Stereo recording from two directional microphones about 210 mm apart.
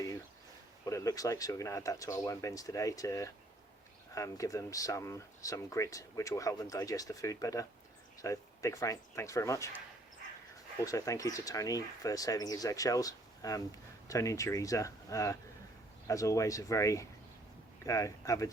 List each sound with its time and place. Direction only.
0.9 s speech: 15° left (ahead or behind)
10.8 s speech: 15° left (ahead or behind)